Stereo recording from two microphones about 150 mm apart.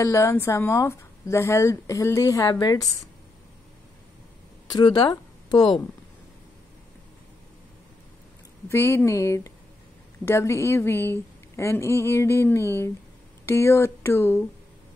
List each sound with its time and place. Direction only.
0.0 s speech: 20° left (ahead or behind)
4.6 s speech: 25° left (ahead or behind)
8.6 s a woman's voice: 15° left (ahead or behind)